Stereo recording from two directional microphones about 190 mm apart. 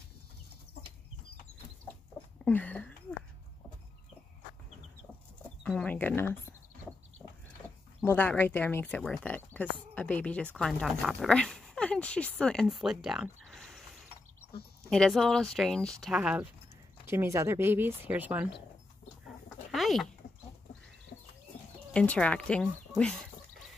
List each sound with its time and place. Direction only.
2.4 s a sound: 5° left (ahead or behind)
5.6 s speech: 5° left (ahead or behind)
8.0 s speech: 10° left (ahead or behind)
13.5 s a sound: centre (ahead or behind)
14.9 s speech: centre (ahead or behind)
19.2 s chicken: centre (ahead or behind)
21.1 s bird: 55° left (ahead or behind)
21.9 s speech: 5° left (ahead or behind)